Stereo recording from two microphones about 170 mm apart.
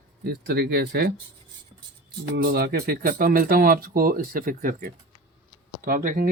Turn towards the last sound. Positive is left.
turn(degrees=-55)  # may be behind; listen again after turning